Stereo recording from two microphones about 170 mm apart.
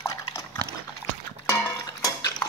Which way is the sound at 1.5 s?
20° left (ahead or behind).